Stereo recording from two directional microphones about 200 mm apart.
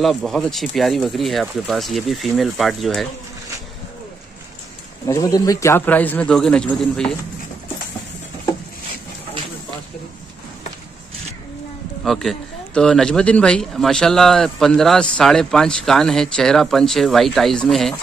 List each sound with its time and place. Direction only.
0.0 s speech: centre (ahead or behind)
5.0 s a man's voice: 15° left (ahead or behind)
12.0 s speech: centre (ahead or behind)